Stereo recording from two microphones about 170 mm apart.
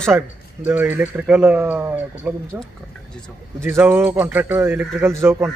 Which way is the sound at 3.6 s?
15° right (ahead or behind).